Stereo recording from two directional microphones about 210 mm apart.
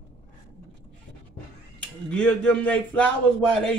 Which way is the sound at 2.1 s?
5° left (ahead or behind).